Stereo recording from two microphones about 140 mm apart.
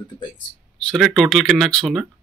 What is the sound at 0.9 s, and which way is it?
Speech, centre (ahead or behind).